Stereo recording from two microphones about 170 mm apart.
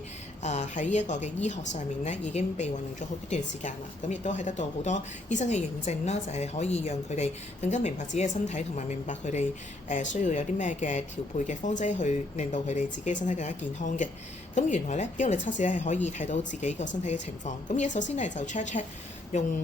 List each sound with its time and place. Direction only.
0.4 s a woman's voice: 40° left (ahead or behind)